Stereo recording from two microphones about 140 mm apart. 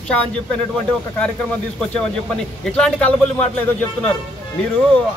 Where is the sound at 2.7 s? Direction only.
10° left (ahead or behind).